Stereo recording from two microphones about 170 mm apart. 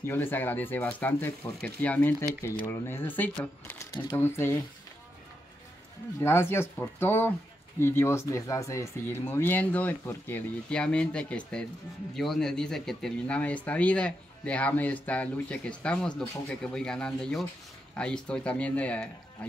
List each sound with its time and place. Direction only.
0.0 s speech: 10° left (ahead or behind)
6.2 s speech: 15° left (ahead or behind)